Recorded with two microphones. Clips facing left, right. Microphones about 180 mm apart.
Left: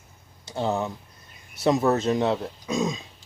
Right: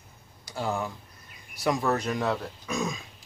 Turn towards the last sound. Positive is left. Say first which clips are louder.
# left 5 dB
turn(degrees=20)  # may be behind; listen again after turning